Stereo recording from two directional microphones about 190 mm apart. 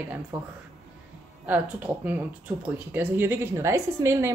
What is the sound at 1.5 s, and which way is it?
A woman's voice, 10° right (ahead or behind).